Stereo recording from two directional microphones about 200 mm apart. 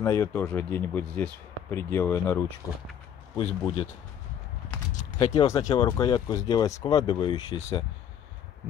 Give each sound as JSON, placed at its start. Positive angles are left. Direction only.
{"t": 0.0, "sound": "speech", "side_deg": 15}
{"t": 3.3, "sound": "speech", "side_deg": 25}
{"t": 5.3, "sound": "speech", "side_deg": 20}